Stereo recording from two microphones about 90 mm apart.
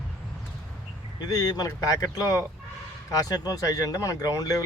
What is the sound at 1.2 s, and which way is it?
Speech, 45° left (ahead or behind).